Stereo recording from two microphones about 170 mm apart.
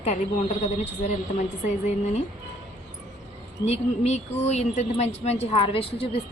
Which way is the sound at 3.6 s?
40° left (ahead or behind).